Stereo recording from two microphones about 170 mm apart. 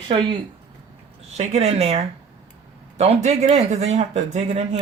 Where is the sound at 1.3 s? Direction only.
40° right (ahead or behind).